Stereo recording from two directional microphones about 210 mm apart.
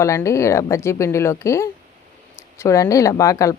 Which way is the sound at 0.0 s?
15° left (ahead or behind).